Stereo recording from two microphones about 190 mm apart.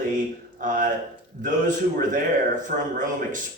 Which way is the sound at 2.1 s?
40° right (ahead or behind).